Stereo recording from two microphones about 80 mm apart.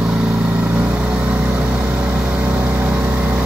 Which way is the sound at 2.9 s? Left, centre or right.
Centre.